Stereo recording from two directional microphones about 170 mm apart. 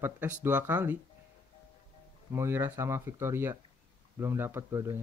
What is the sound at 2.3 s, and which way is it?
Speech, 15° right (ahead or behind).